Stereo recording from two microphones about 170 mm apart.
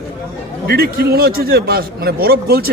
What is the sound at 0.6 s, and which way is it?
A man's voice, 65° right (ahead or behind).